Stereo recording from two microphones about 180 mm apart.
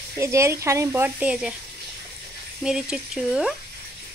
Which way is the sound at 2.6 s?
5° right (ahead or behind).